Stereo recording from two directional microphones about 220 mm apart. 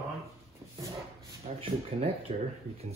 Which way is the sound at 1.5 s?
30° right (ahead or behind).